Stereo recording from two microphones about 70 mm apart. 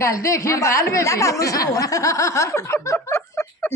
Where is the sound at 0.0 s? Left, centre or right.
Left.